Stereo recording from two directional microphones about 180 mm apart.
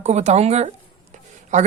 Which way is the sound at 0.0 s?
40° right (ahead or behind).